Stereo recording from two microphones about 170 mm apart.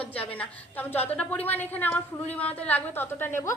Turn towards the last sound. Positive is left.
turn(degrees=15)  # may be behind; listen again after turning